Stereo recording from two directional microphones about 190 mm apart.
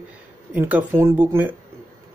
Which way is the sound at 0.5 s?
10° right (ahead or behind).